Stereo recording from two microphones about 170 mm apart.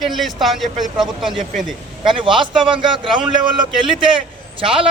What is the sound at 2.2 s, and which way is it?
A man's voice, 30° right (ahead or behind).